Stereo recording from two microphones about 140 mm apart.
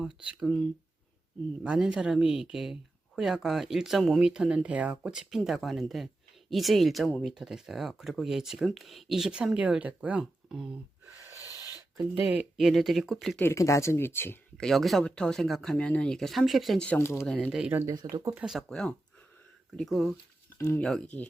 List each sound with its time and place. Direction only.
0.3 s speech: centre (ahead or behind)
12.1 s speech: 10° right (ahead or behind)
13.4 s speech: 20° left (ahead or behind)
14.6 s speech: centre (ahead or behind); by 17.2 s 20° left (ahead or behind)
17.2 s speech: 5° left (ahead or behind)
17.6 s speech: 15° right (ahead or behind)
18.3 s speech: 5° right (ahead or behind)